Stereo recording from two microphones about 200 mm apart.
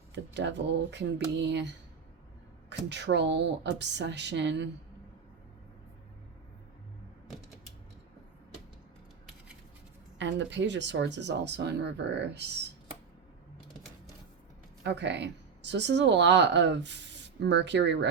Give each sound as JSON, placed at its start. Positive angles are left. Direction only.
{"t": 0.1, "sound": "a woman's voice", "side_deg": -60}
{"t": 10.2, "sound": "a woman's voice", "side_deg": -65}
{"t": 14.8, "sound": "a woman's voice", "side_deg": -60}